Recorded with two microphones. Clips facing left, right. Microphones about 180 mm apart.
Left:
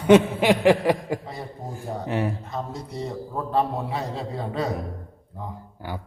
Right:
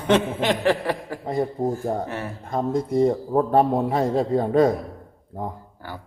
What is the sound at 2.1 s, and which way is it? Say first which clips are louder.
Speech: left 5 dB; 15° left (ahead or behind).